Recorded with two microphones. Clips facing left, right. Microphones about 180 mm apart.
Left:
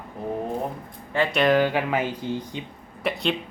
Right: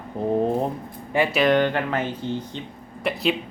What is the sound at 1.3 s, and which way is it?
Speech, centre (ahead or behind).